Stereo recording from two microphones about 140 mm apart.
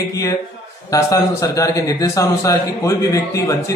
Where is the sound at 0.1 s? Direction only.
25° left (ahead or behind).